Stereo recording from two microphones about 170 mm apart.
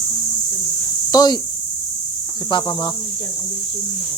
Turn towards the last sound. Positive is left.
turn(degrees=30)  # may be behind; listen again after turning